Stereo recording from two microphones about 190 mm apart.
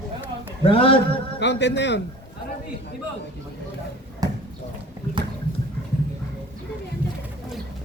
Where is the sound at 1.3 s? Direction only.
65° left (ahead or behind).